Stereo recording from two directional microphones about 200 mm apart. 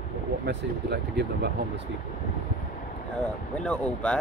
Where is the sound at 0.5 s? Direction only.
55° right (ahead or behind).